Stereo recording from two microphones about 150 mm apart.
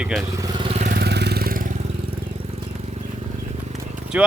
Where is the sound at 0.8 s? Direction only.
80° right.